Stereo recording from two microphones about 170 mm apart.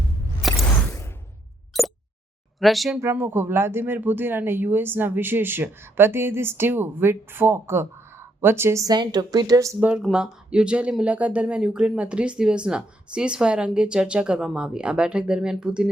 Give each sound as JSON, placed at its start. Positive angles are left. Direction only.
{"t": 0.5, "sound": "a sound", "side_deg": 15}
{"t": 1.7, "sound": "plop", "side_deg": 0}
{"t": 2.6, "sound": "speech", "side_deg": 0}
{"t": 3.0, "sound": "speech", "side_deg": -10}
{"t": 9.9, "sound": "speech", "side_deg": -5}